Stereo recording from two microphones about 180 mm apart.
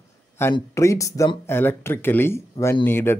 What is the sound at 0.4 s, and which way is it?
Speech, 15° left (ahead or behind).